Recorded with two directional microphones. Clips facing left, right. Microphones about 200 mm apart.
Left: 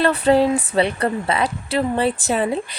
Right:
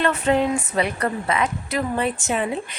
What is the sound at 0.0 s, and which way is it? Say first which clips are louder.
A woman's voice: left 4 dB; 35° left (ahead or behind).